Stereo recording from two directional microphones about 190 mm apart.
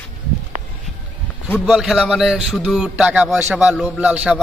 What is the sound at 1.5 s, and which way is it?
A man's voice, centre (ahead or behind).